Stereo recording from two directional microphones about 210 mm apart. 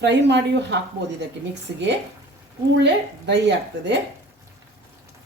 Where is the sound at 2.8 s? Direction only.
55° right (ahead or behind).